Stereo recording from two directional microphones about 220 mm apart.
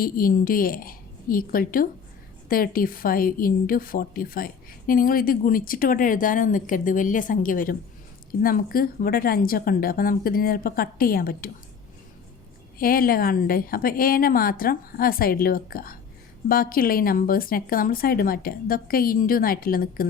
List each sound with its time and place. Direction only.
0.0 s a woman's voice: 40° left (ahead or behind)
12.8 s a woman's voice: 40° left (ahead or behind)